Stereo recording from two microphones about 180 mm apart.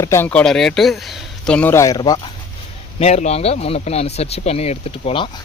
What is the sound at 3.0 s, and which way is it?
Speech, 35° left (ahead or behind).